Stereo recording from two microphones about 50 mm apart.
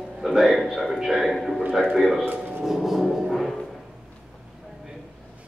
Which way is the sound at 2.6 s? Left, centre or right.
Centre.